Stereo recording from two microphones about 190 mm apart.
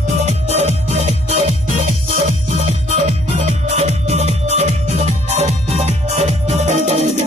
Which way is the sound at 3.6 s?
35° right (ahead or behind).